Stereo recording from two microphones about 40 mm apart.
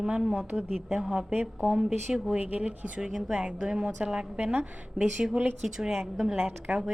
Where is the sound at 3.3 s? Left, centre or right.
Right.